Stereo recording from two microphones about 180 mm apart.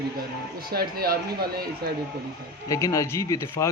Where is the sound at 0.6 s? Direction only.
60° right (ahead or behind).